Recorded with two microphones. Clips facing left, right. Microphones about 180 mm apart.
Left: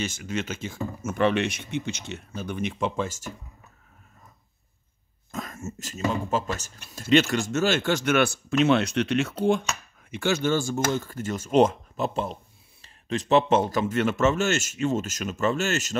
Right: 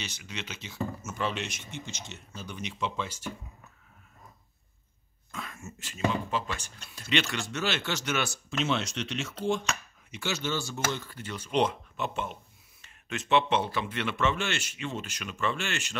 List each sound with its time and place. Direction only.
0.0 s speech: 50° left (ahead or behind)
5.3 s speech: 40° left (ahead or behind)